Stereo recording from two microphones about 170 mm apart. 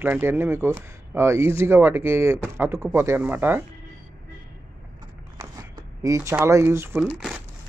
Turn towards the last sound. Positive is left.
turn(degrees=-5)  # may be behind; listen again after turning